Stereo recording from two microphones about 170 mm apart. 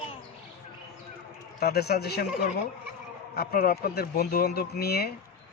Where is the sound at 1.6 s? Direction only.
70° left (ahead or behind).